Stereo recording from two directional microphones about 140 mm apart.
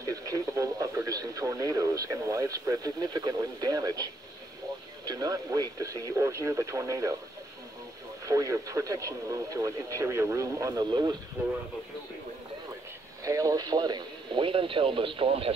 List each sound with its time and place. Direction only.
0.0 s speech: 25° right (ahead or behind)
8.3 s speech: 25° right (ahead or behind)
11.4 s speech: 15° right (ahead or behind)
13.2 s speech: 25° right (ahead or behind); by 15.5 s 40° right (ahead or behind)